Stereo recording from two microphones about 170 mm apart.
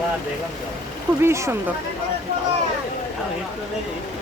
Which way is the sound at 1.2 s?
15° right (ahead or behind).